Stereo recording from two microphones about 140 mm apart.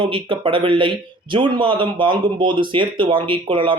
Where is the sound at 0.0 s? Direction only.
35° right (ahead or behind).